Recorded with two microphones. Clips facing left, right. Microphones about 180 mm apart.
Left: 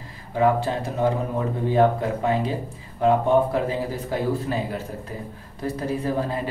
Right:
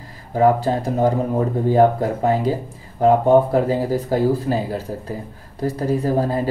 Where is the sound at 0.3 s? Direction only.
40° right (ahead or behind).